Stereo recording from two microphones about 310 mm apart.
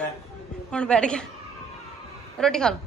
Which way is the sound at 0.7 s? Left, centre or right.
Centre.